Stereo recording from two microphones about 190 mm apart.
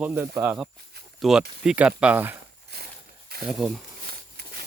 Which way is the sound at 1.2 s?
Centre (ahead or behind).